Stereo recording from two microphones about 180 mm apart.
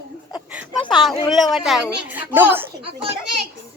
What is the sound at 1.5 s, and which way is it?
A woman's voice, centre (ahead or behind).